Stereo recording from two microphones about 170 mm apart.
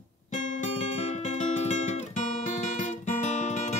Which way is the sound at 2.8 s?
45° left (ahead or behind).